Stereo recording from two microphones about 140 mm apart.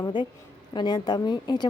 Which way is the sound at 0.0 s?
35° left (ahead or behind).